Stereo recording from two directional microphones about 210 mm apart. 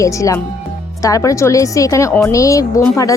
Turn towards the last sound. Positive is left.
turn(degrees=15)  # may be behind; listen again after turning